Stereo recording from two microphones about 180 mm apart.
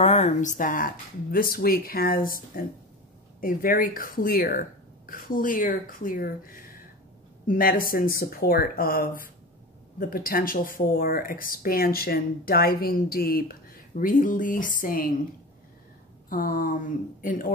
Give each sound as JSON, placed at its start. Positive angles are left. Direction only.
{"t": 0.0, "sound": "speech", "side_deg": 35}
{"t": 16.3, "sound": "speech", "side_deg": 50}